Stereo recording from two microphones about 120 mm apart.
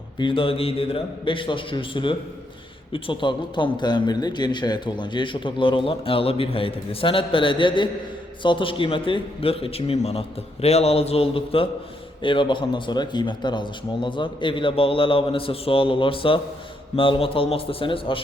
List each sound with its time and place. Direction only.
0.2 s a man's voice: 45° left (ahead or behind)